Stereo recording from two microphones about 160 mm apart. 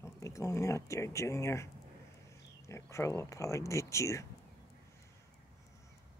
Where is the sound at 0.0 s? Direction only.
20° left (ahead or behind).